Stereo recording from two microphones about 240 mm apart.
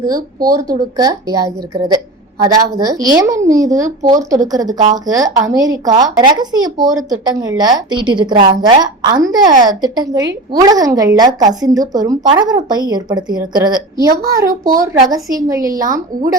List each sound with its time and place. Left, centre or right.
0.0 s speech: centre
3.8 s speech: right
4.2 s speech: centre